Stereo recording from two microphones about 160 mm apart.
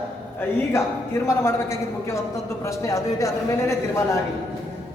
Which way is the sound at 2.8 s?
20° left (ahead or behind).